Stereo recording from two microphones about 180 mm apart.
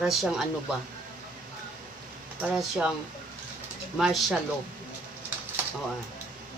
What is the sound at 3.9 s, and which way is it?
Speech, centre (ahead or behind).